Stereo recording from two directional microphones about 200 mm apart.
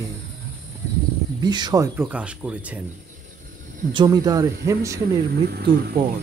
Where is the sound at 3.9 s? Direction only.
20° right (ahead or behind).